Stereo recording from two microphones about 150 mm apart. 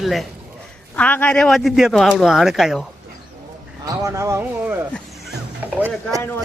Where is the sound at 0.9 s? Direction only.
10° left (ahead or behind).